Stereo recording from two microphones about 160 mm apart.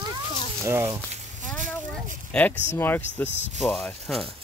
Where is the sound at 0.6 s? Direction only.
15° right (ahead or behind).